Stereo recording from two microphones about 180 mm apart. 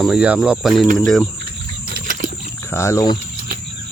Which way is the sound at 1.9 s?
50° right (ahead or behind).